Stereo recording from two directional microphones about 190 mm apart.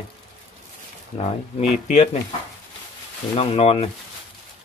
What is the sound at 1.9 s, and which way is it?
Speech, 35° left (ahead or behind).